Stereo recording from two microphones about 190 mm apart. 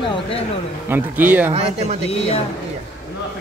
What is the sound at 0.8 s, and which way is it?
Speech, 10° right (ahead or behind).